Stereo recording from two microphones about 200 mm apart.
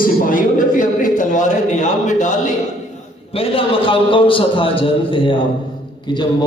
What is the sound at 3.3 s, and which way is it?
A man's voice, 25° left (ahead or behind).